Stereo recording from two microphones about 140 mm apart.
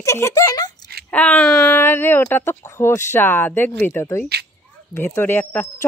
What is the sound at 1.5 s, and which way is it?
Speech, 20° left (ahead or behind).